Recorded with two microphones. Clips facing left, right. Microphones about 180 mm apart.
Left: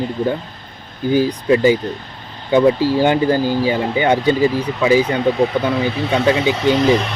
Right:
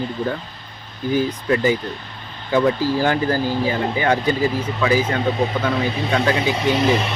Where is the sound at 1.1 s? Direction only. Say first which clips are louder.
Left 5 dB; 25° left (ahead or behind).